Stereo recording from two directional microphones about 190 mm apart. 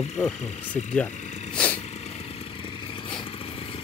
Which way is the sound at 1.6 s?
5° left (ahead or behind).